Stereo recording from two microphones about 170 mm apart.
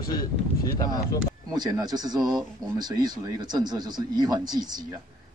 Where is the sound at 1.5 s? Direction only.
25° right (ahead or behind).